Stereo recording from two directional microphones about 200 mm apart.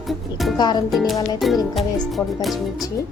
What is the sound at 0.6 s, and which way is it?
Speech, 20° left (ahead or behind).